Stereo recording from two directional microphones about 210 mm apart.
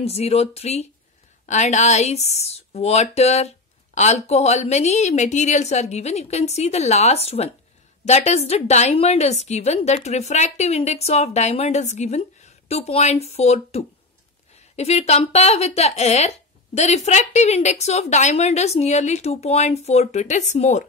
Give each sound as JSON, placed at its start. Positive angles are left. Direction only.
{"t": 0.0, "sound": "speech", "side_deg": 30}